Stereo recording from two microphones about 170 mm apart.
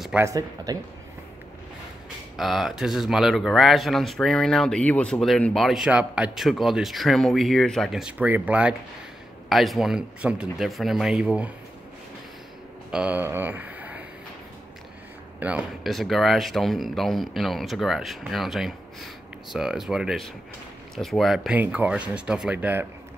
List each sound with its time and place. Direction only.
0.2 s speech: 20° right (ahead or behind)
2.3 s speech: centre (ahead or behind)
12.9 s speech: 10° right (ahead or behind)
15.4 s speech: 5° right (ahead or behind)